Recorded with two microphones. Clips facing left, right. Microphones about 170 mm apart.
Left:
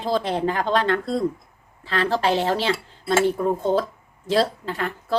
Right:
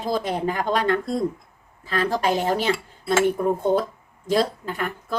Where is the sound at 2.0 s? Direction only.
15° right (ahead or behind).